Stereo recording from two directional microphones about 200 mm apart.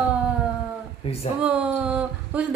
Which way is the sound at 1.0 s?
30° left (ahead or behind).